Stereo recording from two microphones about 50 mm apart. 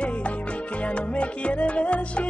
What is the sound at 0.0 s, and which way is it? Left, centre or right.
Music, left.